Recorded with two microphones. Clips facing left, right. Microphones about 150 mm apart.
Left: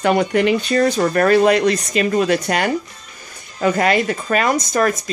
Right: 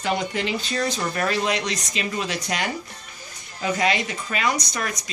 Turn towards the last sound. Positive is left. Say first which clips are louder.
# left 12 dB
turn(degrees=50)  # may be behind; listen again after turning